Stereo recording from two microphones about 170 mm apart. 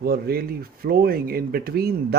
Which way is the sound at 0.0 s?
60° right (ahead or behind).